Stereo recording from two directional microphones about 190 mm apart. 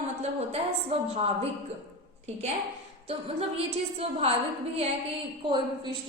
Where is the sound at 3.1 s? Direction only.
30° right (ahead or behind).